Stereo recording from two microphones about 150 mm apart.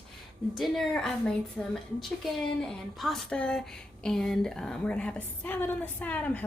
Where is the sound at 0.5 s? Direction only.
Centre (ahead or behind).